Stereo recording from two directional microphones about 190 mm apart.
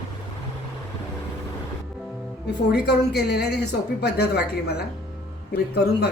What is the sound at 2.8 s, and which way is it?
A woman's voice, 60° left (ahead or behind).